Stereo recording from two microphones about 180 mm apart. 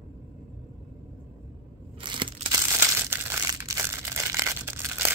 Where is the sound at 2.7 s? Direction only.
15° right (ahead or behind).